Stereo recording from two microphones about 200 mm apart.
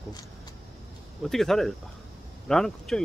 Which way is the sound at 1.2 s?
Centre (ahead or behind).